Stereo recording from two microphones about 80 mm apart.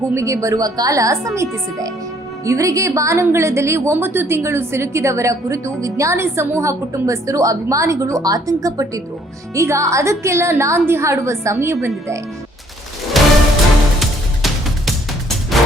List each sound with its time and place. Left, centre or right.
0.1 s a woman's voice: right
13.2 s music: centre